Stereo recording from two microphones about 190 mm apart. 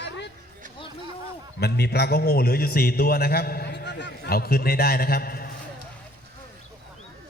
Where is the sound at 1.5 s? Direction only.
60° left (ahead or behind).